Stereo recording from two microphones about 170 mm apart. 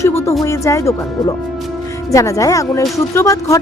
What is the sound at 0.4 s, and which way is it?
A woman's voice, 20° left (ahead or behind).